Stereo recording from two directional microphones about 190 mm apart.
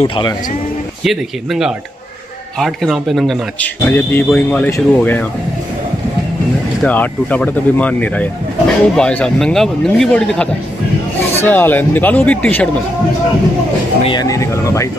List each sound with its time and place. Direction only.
0.0 s speech: 25° left (ahead or behind)
1.0 s speech: centre (ahead or behind)
6.8 s speech: 5° left (ahead or behind)
14.0 s speech: 20° left (ahead or behind)